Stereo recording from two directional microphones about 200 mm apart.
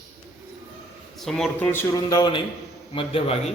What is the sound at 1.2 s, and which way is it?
A man's voice, centre (ahead or behind).